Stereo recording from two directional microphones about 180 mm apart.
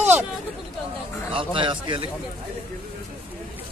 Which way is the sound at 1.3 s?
30° right (ahead or behind).